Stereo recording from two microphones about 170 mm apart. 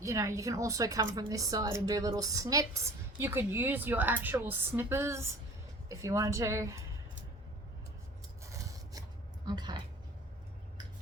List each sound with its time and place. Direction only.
0.0 s a woman's voice: 20° right (ahead or behind)
8.4 s rub: 20° right (ahead or behind)